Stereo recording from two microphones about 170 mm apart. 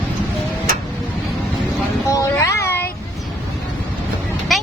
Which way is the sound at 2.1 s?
15° left (ahead or behind).